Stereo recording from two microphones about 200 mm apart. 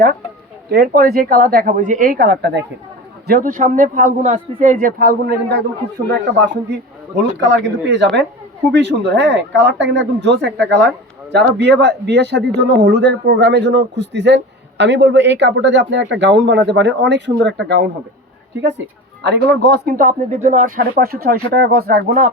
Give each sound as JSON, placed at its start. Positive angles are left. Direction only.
{"t": 0.7, "sound": "speech", "side_deg": -50}
{"t": 3.2, "sound": "a man's voice", "side_deg": -45}